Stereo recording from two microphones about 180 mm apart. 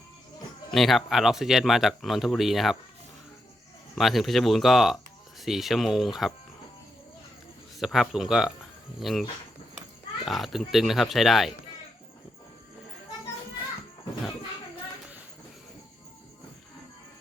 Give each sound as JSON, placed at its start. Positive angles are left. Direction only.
{"t": 0.7, "sound": "speech", "side_deg": 0}
{"t": 3.9, "sound": "speech", "side_deg": 0}
{"t": 7.8, "sound": "speech", "side_deg": 0}
{"t": 10.2, "sound": "speech", "side_deg": 0}